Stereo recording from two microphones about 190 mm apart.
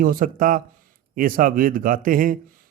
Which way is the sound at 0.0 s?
50° right (ahead or behind).